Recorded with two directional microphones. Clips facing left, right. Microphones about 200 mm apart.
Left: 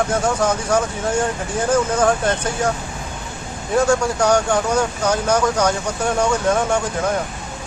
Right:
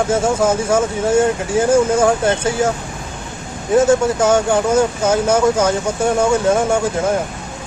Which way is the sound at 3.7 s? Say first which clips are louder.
Right 4 dB; 20° right (ahead or behind).